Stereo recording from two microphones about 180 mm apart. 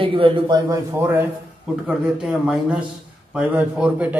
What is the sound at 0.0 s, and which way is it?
Speech, 30° right (ahead or behind).